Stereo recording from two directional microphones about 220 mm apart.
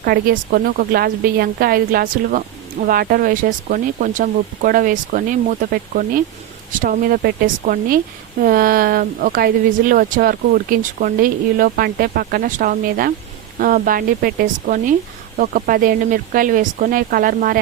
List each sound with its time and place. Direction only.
0.0 s a woman's voice: 40° right (ahead or behind)